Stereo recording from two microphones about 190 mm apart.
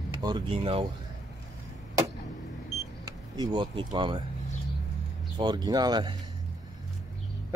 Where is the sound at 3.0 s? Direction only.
20° right (ahead or behind).